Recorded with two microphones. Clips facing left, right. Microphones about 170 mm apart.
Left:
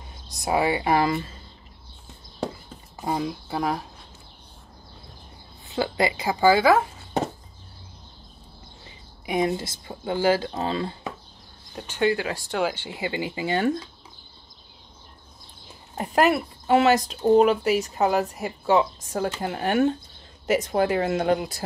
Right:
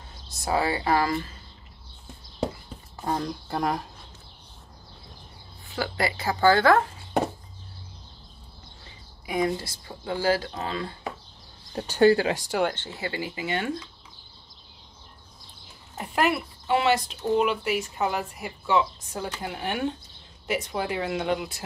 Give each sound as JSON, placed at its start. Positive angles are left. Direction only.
{"t": 0.3, "sound": "speech", "side_deg": 15}
{"t": 3.0, "sound": "speech", "side_deg": 10}
{"t": 5.7, "sound": "speech", "side_deg": 20}
{"t": 9.2, "sound": "speech", "side_deg": 20}
{"t": 11.7, "sound": "speech", "side_deg": -35}
{"t": 12.4, "sound": "speech", "side_deg": 0}
{"t": 12.7, "sound": "speech", "side_deg": 15}
{"t": 16.0, "sound": "speech", "side_deg": 40}